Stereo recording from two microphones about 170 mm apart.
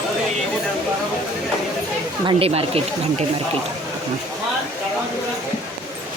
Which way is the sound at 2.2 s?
30° right (ahead or behind).